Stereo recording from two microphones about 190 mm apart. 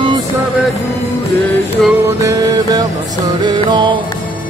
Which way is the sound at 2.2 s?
20° right (ahead or behind).